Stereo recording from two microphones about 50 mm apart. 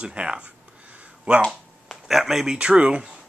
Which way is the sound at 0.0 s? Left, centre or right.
Right.